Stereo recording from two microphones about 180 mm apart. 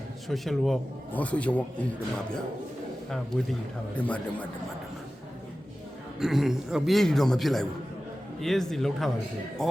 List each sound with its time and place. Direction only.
0.3 s a man's voice: centre (ahead or behind)
4.0 s a man's voice: 10° left (ahead or behind)
6.1 s a man's voice: centre (ahead or behind)